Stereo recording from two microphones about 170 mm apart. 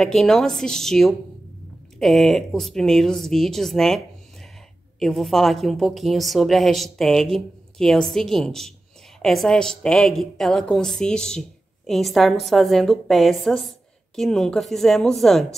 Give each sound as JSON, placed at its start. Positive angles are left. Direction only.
{"t": 0.0, "sound": "a woman's voice", "side_deg": 0}